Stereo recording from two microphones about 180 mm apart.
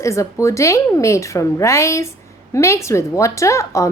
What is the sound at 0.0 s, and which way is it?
A woman's voice, 15° left (ahead or behind).